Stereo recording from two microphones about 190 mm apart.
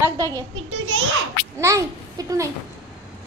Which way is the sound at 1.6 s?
15° right (ahead or behind).